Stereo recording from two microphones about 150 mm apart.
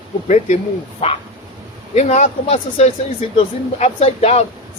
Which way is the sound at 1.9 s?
50° left (ahead or behind).